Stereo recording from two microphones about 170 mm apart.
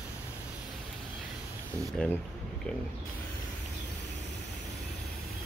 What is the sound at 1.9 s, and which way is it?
Speech, 5° left (ahead or behind).